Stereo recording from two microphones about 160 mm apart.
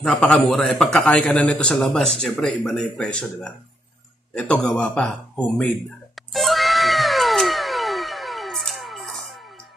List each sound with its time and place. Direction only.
0.0 s a man's voice: 5° left (ahead or behind)
6.3 s cat: centre (ahead or behind)